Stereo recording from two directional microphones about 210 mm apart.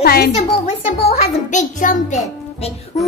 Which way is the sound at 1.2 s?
35° left (ahead or behind).